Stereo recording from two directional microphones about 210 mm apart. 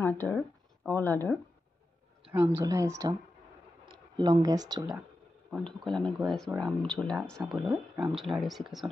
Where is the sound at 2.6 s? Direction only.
15° right (ahead or behind).